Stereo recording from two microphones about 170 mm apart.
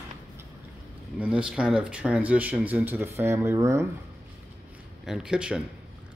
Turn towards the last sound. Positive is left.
turn(degrees=-5)  # may be behind; listen again after turning